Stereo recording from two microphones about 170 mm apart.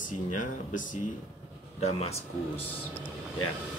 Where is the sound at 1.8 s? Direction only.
40° left (ahead or behind).